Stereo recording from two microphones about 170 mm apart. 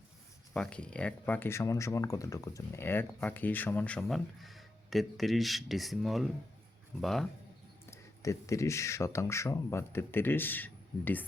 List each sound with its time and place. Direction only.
0.5 s speech: 5° left (ahead or behind)
7.9 s speech: 20° left (ahead or behind)